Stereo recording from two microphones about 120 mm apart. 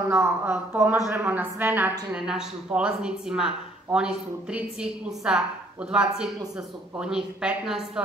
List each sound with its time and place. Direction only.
0.1 s a woman's voice: 20° right (ahead or behind)